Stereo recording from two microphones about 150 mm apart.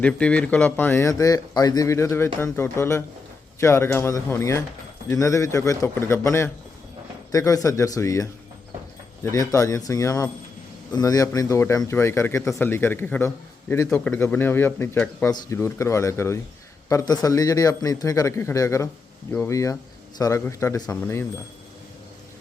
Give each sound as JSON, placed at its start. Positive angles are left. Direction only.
{"t": 0.0, "sound": "a man's voice", "side_deg": 10}
{"t": 9.3, "sound": "a man's voice", "side_deg": 20}